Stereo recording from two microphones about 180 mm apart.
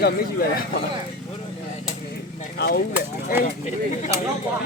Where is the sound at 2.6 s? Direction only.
65° left (ahead or behind).